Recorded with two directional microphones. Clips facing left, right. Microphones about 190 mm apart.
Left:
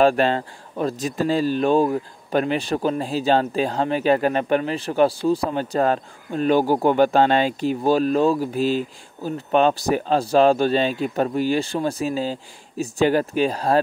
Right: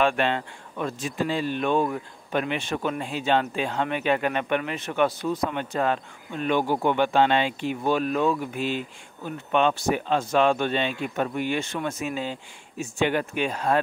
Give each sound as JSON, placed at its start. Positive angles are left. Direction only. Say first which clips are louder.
{"t": 0.0, "sound": "speech", "louder": "left 6 dB", "side_deg": 35}